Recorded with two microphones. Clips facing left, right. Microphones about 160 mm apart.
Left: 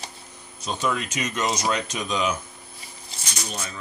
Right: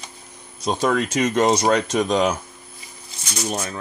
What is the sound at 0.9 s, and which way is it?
Speech, 50° right (ahead or behind).